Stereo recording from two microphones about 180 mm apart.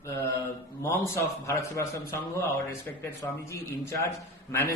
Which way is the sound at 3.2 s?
20° left (ahead or behind).